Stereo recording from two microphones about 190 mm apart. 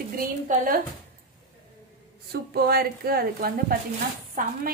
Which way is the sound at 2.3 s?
55° right (ahead or behind).